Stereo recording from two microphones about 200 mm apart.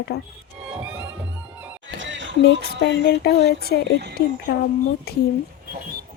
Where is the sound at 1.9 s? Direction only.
65° right (ahead or behind).